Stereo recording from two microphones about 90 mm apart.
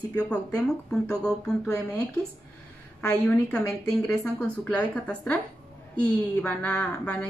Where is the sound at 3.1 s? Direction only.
10° left (ahead or behind).